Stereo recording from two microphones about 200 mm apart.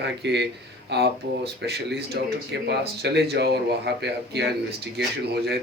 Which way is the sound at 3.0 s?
55° right (ahead or behind).